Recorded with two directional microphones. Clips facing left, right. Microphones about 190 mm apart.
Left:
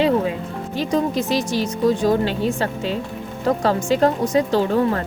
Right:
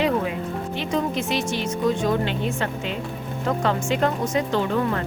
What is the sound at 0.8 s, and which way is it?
A woman's voice, 40° left (ahead or behind).